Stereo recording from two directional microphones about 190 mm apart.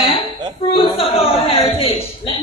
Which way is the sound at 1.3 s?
30° left (ahead or behind).